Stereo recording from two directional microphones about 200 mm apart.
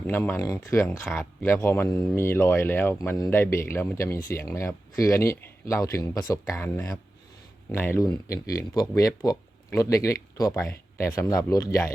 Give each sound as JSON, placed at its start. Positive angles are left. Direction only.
{"t": 0.1, "sound": "speech", "side_deg": 10}